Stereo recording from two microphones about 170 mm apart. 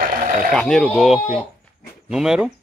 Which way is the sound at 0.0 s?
55° right (ahead or behind).